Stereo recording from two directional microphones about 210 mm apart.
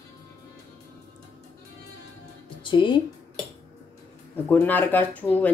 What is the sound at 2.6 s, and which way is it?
Music, 25° left (ahead or behind).